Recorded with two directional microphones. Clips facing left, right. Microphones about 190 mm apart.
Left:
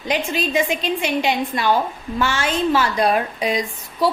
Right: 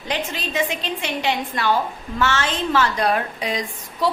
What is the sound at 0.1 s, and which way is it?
A woman's voice, 10° left (ahead or behind).